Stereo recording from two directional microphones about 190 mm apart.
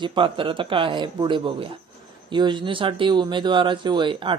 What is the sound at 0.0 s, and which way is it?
Speech, 25° right (ahead or behind).